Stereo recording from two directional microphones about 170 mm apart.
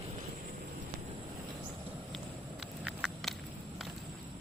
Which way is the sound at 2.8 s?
5° right (ahead or behind).